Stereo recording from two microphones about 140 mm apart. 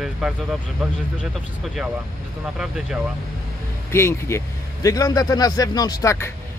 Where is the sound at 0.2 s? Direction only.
5° right (ahead or behind).